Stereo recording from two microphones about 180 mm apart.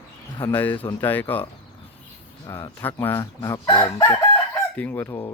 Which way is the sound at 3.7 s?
25° left (ahead or behind).